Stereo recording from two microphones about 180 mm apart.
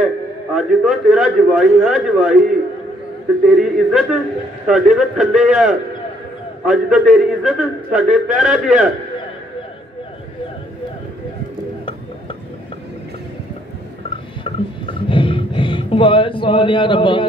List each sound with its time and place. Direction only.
0.6 s a man's voice: 5° right (ahead or behind)
3.4 s a man's voice: 5° right (ahead or behind)
14.4 s speech: 30° left (ahead or behind)